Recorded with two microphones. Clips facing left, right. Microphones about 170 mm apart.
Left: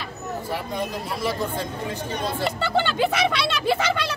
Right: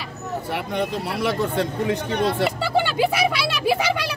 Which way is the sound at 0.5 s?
65° right (ahead or behind).